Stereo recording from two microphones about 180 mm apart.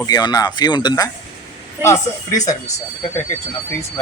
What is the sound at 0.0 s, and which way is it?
Speech, 20° left (ahead or behind).